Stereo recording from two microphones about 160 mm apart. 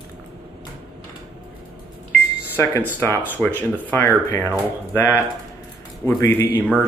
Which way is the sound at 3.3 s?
10° left (ahead or behind).